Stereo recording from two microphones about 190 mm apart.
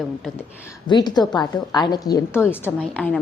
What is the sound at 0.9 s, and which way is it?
A woman's voice, 20° left (ahead or behind).